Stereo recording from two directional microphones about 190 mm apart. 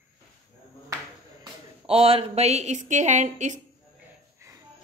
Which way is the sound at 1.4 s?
30° right (ahead or behind).